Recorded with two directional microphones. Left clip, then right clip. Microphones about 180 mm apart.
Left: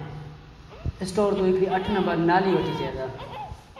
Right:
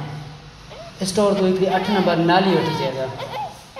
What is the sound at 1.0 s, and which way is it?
Speech, 5° left (ahead or behind).